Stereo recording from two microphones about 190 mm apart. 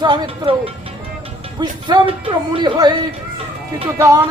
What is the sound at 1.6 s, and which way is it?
A man's voice, 25° right (ahead or behind).